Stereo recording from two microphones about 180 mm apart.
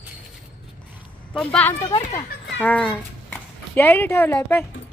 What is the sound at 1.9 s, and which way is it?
Speech, 20° left (ahead or behind).